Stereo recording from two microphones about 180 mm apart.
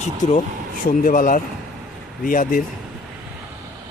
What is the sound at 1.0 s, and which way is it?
Speech, 50° left (ahead or behind).